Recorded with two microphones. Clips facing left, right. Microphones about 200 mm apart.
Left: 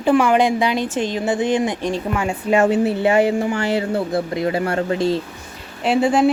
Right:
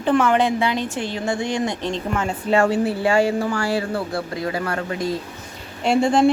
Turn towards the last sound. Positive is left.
turn(degrees=5)  # may be behind; listen again after turning